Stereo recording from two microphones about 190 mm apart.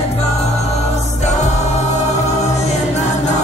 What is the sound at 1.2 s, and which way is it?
Music, 35° left (ahead or behind).